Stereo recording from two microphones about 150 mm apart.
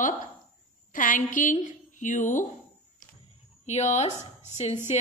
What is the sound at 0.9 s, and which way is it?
A woman's voice, 60° left (ahead or behind).